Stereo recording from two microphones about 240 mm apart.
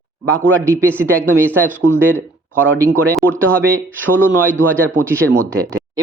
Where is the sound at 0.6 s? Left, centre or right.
Centre.